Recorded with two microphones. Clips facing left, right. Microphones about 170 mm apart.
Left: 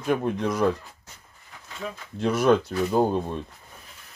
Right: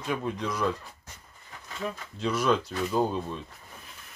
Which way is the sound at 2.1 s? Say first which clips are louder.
Left 6 dB; 50° left (ahead or behind).